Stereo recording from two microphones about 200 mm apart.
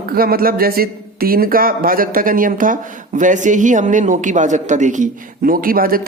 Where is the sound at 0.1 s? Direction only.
50° right (ahead or behind).